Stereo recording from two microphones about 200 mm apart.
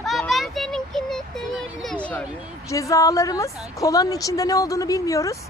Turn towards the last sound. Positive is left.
turn(degrees=15)  # may be behind; listen again after turning